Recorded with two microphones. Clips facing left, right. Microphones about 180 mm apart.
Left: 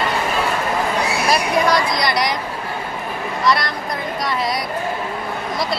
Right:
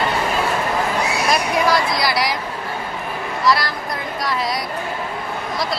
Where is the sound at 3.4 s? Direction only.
Centre (ahead or behind).